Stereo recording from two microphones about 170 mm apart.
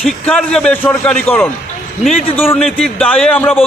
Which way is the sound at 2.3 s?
10° left (ahead or behind).